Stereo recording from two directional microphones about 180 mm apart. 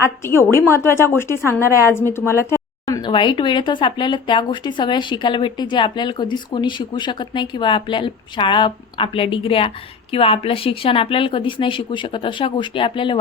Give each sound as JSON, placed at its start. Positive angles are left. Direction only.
{"t": 0.2, "sound": "a woman's voice", "side_deg": 15}